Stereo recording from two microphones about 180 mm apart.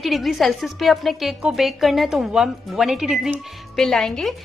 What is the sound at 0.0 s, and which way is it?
Speech, centre (ahead or behind).